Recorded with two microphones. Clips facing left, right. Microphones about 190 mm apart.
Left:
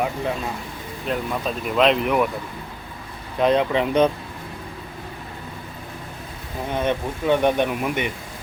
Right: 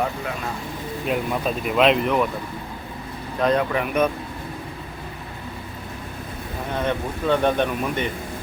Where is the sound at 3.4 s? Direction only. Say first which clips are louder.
Left 2 dB; 20° left (ahead or behind).